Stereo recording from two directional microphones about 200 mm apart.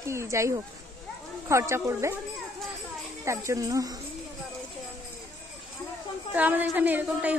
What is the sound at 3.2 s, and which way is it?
Speech, 15° right (ahead or behind).